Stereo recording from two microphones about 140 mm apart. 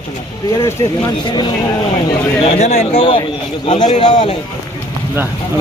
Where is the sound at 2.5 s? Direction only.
45° left (ahead or behind).